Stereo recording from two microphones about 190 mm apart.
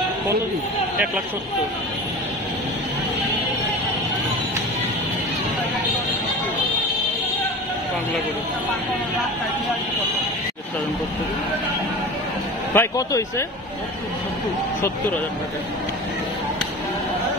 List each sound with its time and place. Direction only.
12.7 s a man's voice: 15° left (ahead or behind)